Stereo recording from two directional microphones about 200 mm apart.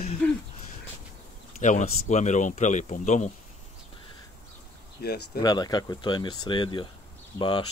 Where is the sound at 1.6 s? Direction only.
35° left (ahead or behind).